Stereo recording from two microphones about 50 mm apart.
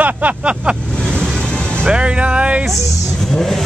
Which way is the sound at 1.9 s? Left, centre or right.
Right.